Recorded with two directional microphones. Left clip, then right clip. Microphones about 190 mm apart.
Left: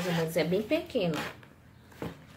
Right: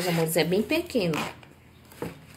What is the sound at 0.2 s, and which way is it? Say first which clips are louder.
Speech: right 4 dB; 45° right (ahead or behind).